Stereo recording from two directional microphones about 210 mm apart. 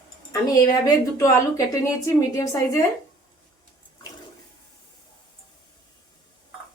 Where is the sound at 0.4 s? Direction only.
15° left (ahead or behind).